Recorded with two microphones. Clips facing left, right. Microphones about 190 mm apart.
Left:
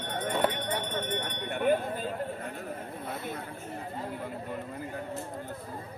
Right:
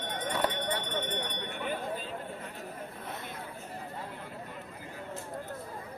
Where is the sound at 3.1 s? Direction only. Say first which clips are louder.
Left 7 dB; 10° left (ahead or behind).